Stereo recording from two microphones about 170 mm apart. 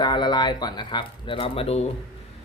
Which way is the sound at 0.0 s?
25° left (ahead or behind).